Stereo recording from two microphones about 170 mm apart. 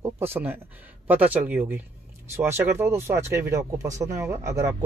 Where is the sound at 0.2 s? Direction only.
10° right (ahead or behind).